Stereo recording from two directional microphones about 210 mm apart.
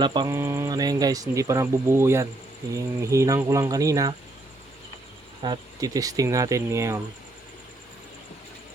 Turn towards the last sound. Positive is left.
turn(degrees=-15)  # may be behind; listen again after turning